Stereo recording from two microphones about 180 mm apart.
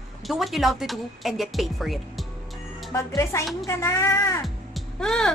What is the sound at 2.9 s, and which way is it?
Speech, 15° left (ahead or behind).